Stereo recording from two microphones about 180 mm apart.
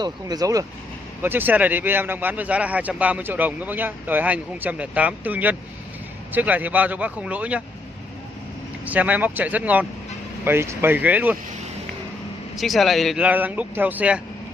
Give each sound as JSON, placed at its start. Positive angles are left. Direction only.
{"t": 0.0, "sound": "speech", "side_deg": -20}
{"t": 8.8, "sound": "speech", "side_deg": -10}
{"t": 12.5, "sound": "speech", "side_deg": 0}